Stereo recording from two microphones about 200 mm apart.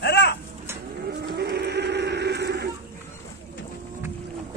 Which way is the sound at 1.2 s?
55° right (ahead or behind).